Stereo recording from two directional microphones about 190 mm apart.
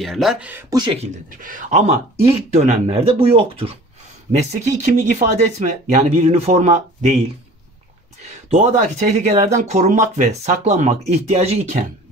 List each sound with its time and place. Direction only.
0.0 s speech: centre (ahead or behind); by 0.9 s 20° right (ahead or behind)
1.4 s speech: 45° right (ahead or behind)
8.3 s speech: 35° right (ahead or behind)